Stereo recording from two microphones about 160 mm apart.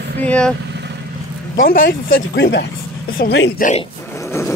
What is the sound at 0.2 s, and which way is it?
Speech, 5° left (ahead or behind).